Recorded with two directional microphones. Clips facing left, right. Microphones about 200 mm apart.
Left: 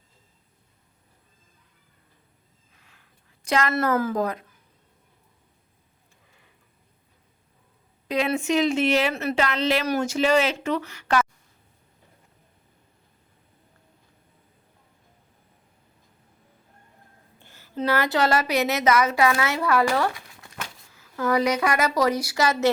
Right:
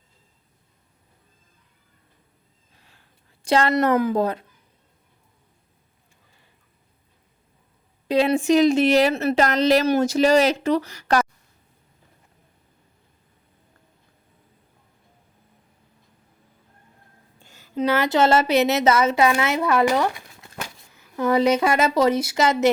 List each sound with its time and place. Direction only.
2.7 s a sound: 30° right (ahead or behind)
3.7 s a woman's voice: 20° right (ahead or behind)
8.0 s speech: 30° right (ahead or behind)
17.4 s a woman's voice: 15° right (ahead or behind)
21.2 s a woman's voice: 25° right (ahead or behind)